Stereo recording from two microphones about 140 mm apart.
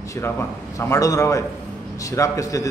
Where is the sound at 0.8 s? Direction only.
20° left (ahead or behind).